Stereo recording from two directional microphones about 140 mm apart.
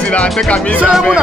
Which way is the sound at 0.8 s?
Centre (ahead or behind).